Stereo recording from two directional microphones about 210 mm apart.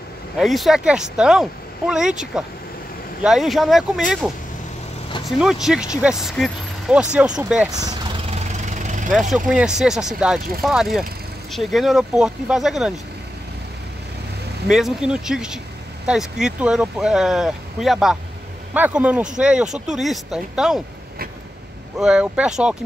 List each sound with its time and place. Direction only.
0.4 s speech: centre (ahead or behind)
5.4 s speech: centre (ahead or behind)
8.3 s vehicle: 35° right (ahead or behind)
9.1 s speech: centre (ahead or behind)
14.7 s speech: centre (ahead or behind)
21.9 s speech: 5° right (ahead or behind)